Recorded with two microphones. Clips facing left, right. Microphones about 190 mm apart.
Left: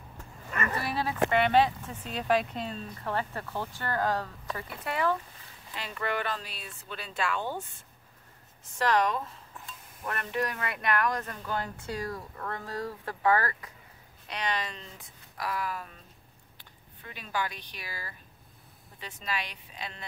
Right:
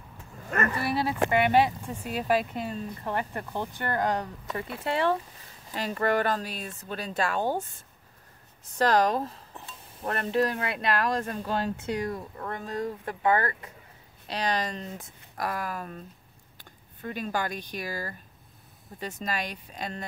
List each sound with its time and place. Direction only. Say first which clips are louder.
0.5 s speech: right 6 dB; 45° right (ahead or behind)
0.8 s speech: right 2 dB; 10° right (ahead or behind)
3.0 s speech: left 1 dB; 20° right (ahead or behind)
5.7 s speech: right 7 dB; 40° right (ahead or behind)
8.7 s speech: right 4 dB; 35° right (ahead or behind)